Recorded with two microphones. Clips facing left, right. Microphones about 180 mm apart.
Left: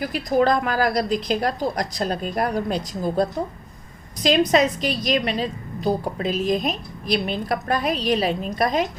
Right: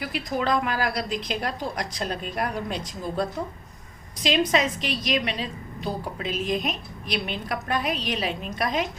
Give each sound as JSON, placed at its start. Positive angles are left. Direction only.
{"t": 0.0, "sound": "a woman's voice", "side_deg": 40}